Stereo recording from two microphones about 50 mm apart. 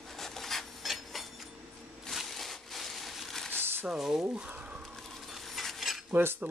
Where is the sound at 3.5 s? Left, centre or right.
Right.